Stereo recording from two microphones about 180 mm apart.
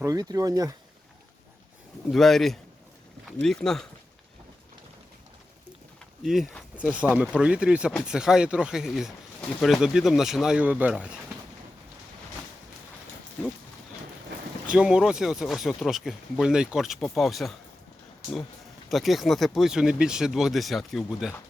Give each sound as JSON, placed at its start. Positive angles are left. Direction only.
{"t": 0.0, "sound": "speech", "side_deg": -20}
{"t": 2.0, "sound": "speech", "side_deg": 0}
{"t": 6.2, "sound": "speech", "side_deg": 0}
{"t": 14.7, "sound": "speech", "side_deg": -5}
{"t": 18.9, "sound": "speech", "side_deg": 0}